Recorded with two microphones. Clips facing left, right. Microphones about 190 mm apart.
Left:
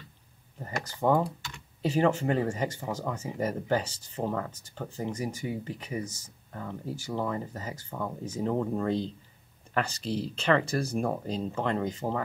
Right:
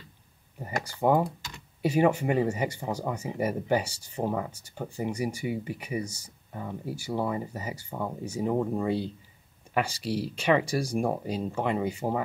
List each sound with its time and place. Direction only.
1.0 s speech: 15° right (ahead or behind)